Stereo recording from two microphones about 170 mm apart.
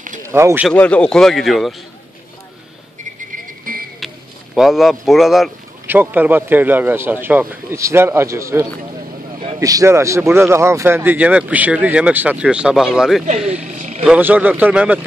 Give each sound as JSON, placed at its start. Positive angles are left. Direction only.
{"t": 0.3, "sound": "speech", "side_deg": -15}
{"t": 0.7, "sound": "a man's voice", "side_deg": 5}
{"t": 4.0, "sound": "a sound", "side_deg": 0}
{"t": 4.6, "sound": "speech", "side_deg": 0}
{"t": 13.7, "sound": "a sound", "side_deg": -45}
{"t": 14.0, "sound": "speech", "side_deg": -10}